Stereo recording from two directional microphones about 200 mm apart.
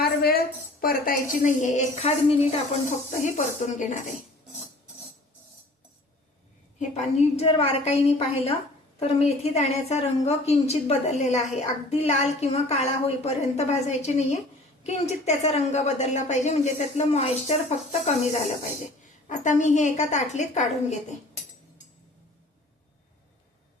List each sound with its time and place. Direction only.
0.0 s a woman's voice: 50° left (ahead or behind)
6.7 s a woman's voice: 35° left (ahead or behind)